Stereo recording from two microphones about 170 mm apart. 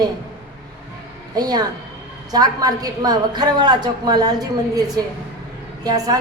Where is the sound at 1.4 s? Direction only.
25° right (ahead or behind).